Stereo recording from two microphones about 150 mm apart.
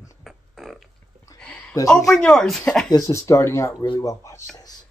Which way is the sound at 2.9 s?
20° left (ahead or behind).